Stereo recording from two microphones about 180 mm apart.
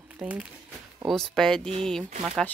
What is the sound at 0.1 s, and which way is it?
Speech, 5° right (ahead or behind).